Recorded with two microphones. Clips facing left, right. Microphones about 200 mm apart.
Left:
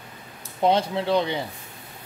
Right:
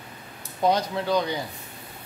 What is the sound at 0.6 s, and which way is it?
Speech, 25° left (ahead or behind).